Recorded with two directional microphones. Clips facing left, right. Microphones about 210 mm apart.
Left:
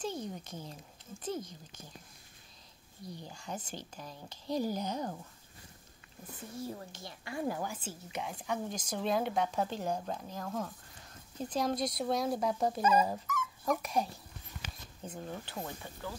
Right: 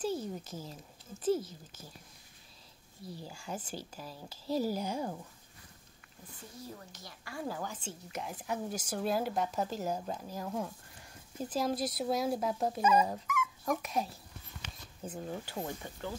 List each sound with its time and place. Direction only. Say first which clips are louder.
0.0 s a sound: right 3 dB; 5° right (ahead or behind)
1.2 s speech: right 7 dB; 5° right (ahead or behind)
3.0 s speech: right 1 dB; 5° right (ahead or behind)
6.6 s a woman's voice: left 6 dB; 25° left (ahead or behind); by 15.2 s 5° right (ahead or behind)
15.4 s speech: right 3 dB; 15° right (ahead or behind)